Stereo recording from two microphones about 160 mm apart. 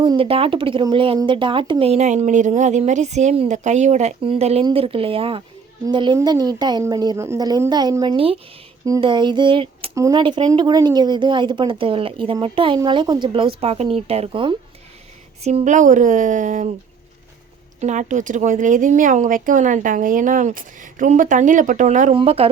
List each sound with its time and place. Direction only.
0.0 s a woman's voice: 30° right (ahead or behind)
9.9 s speech: 20° right (ahead or behind)
10.2 s speech: 30° right (ahead or behind); by 16.6 s 50° right (ahead or behind)
17.7 s speech: 50° right (ahead or behind)
22.1 s speech: 35° right (ahead or behind)